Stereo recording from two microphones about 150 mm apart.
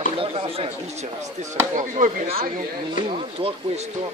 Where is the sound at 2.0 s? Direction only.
60° right (ahead or behind).